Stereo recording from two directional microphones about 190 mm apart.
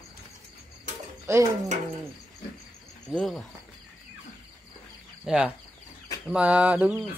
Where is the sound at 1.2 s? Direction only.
15° right (ahead or behind).